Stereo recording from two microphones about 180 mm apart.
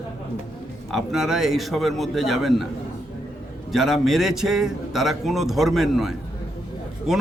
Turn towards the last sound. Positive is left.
turn(degrees=0)  # may be behind; listen again after turning